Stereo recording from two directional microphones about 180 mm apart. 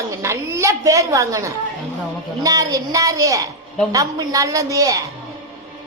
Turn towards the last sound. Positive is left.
turn(degrees=-20)  # may be behind; listen again after turning